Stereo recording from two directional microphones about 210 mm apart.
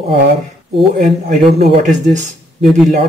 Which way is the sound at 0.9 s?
35° right (ahead or behind).